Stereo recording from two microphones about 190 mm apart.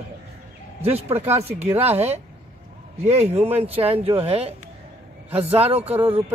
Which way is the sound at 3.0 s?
35° right (ahead or behind).